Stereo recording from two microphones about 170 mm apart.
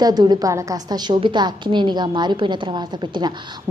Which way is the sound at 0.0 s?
25° right (ahead or behind).